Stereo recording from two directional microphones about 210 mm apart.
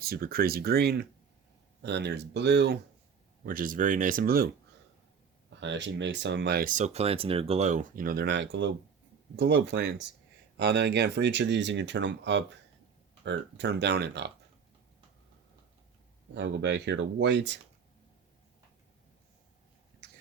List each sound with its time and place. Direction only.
0.0 s speech: 45° right (ahead or behind)
3.4 s speech: 40° right (ahead or behind)
5.5 s speech: 60° right (ahead or behind)
16.3 s speech: 55° right (ahead or behind)